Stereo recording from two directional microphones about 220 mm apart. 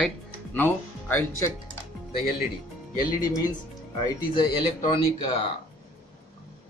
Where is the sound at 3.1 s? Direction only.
15° left (ahead or behind).